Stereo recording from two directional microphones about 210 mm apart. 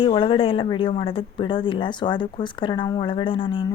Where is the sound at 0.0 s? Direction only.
25° left (ahead or behind).